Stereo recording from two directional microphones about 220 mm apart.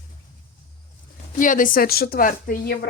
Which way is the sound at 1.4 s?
35° left (ahead or behind).